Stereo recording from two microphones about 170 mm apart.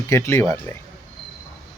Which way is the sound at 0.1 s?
15° left (ahead or behind).